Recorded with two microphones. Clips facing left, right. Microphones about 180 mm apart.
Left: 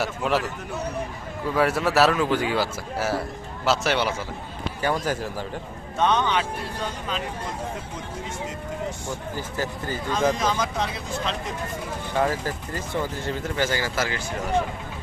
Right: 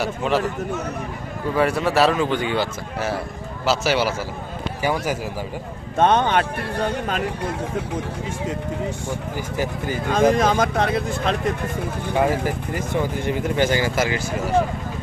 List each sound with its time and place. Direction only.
0.0 s a man's voice: centre (ahead or behind)
1.5 s a man's voice: 5° left (ahead or behind)
6.0 s speech: 50° right (ahead or behind)
9.6 s speech: 15° right (ahead or behind)
10.3 s speech: 55° right (ahead or behind)
12.1 s speech: 15° right (ahead or behind)